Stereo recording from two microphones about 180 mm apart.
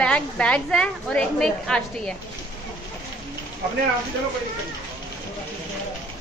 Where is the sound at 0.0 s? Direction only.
5° left (ahead or behind).